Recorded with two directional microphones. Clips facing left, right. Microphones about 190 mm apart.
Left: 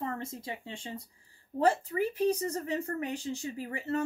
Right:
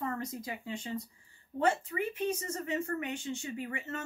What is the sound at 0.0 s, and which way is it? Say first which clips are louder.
Speech: even; 30° left (ahead or behind).